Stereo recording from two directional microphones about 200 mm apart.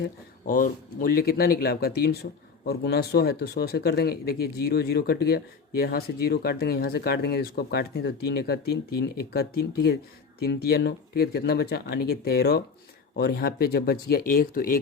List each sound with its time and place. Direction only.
0.0 s speech: 45° left (ahead or behind)